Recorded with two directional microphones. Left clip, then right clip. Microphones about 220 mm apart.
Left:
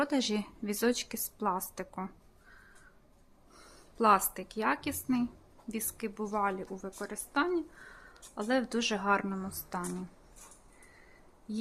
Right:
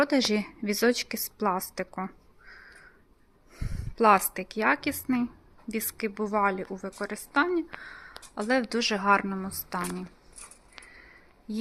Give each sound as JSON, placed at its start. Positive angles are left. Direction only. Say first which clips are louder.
{"t": 0.0, "sound": "a woman's voice", "louder": "right 7 dB", "side_deg": -15}
{"t": 11.5, "sound": "speech", "louder": "right 4 dB", "side_deg": -10}